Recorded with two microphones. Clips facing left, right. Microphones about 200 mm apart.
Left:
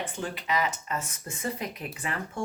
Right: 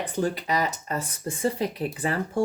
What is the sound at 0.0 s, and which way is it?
Speech, 40° right (ahead or behind).